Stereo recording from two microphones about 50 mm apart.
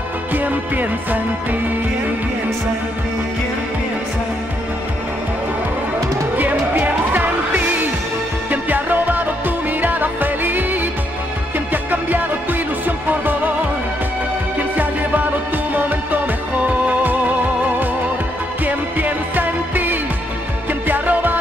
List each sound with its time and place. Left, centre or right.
0.3 s music: right
6.3 s music: right
16.8 s music: right
18.7 s music: right